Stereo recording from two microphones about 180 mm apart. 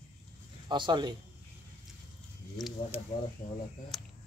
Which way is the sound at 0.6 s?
25° right (ahead or behind).